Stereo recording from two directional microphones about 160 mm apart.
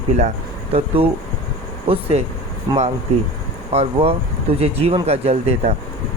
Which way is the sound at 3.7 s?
40° right (ahead or behind).